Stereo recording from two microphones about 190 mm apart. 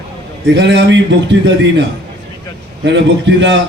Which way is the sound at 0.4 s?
65° right (ahead or behind).